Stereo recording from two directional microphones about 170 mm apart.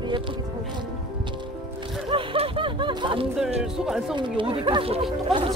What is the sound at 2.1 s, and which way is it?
Speech, 30° right (ahead or behind).